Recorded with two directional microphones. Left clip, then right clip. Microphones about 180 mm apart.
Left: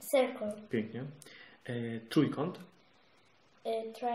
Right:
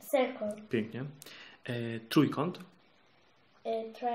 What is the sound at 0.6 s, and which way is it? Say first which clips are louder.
Speech: right 2 dB; 35° right (ahead or behind).